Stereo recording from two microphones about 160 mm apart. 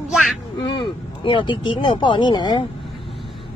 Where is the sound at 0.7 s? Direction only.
30° left (ahead or behind).